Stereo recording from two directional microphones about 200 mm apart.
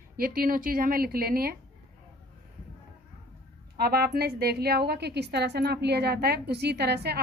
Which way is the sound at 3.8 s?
50° right (ahead or behind).